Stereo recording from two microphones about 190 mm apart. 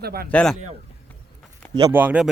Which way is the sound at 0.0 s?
55° right (ahead or behind).